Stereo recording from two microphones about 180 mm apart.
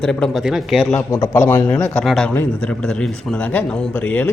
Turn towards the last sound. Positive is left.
turn(degrees=10)  # may be behind; listen again after turning